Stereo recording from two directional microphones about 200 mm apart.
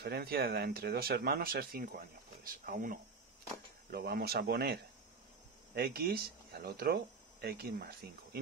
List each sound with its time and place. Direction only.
0.0 s speech: 50° right (ahead or behind)
5.8 s speech: 50° right (ahead or behind)